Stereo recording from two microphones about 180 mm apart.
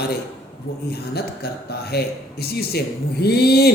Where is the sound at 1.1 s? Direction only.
60° left (ahead or behind).